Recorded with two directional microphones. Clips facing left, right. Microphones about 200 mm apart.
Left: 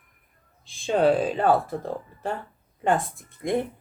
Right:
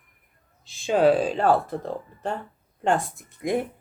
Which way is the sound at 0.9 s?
Centre (ahead or behind).